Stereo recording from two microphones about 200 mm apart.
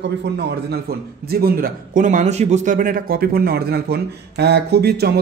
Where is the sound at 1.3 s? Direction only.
50° right (ahead or behind).